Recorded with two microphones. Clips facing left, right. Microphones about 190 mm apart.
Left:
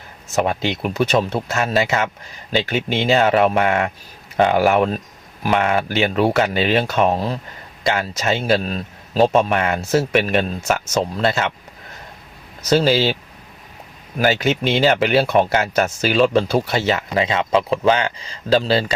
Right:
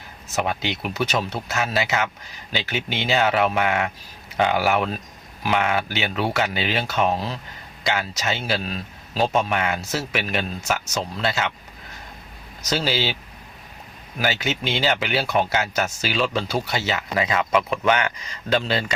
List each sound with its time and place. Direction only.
0.3 s speech: 50° left (ahead or behind)
12.7 s speech: 50° left (ahead or behind)
14.2 s a man's voice: 50° left (ahead or behind)
17.2 s speech: 25° left (ahead or behind)